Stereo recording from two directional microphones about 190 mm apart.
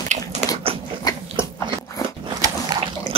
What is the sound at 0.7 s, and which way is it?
Biting, 30° right (ahead or behind).